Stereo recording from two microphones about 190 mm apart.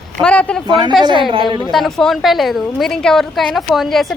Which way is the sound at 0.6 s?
25° right (ahead or behind).